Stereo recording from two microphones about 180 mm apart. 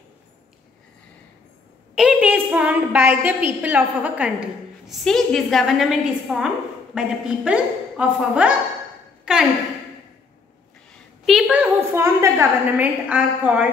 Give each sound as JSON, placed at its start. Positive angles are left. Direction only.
{"t": 2.0, "sound": "a woman's voice", "side_deg": -5}
{"t": 9.2, "sound": "a sound", "side_deg": -5}
{"t": 11.2, "sound": "a woman's voice", "side_deg": 0}